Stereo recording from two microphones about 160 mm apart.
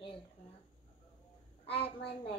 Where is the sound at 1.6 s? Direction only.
35° left (ahead or behind).